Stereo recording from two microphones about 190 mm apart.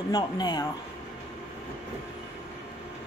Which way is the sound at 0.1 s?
20° left (ahead or behind).